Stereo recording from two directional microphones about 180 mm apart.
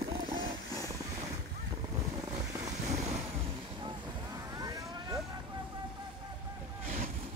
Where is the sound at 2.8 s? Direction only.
35° right (ahead or behind).